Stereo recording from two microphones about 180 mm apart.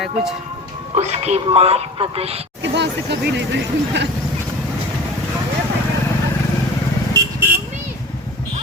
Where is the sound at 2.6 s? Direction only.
70° right (ahead or behind).